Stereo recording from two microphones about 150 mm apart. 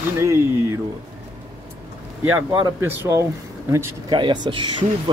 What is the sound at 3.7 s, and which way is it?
Speech, 30° right (ahead or behind).